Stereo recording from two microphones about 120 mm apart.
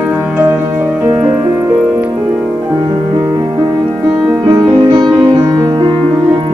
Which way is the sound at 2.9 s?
30° right (ahead or behind).